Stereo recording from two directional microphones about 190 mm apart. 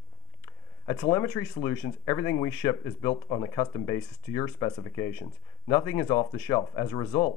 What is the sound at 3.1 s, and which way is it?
Speech, 25° left (ahead or behind).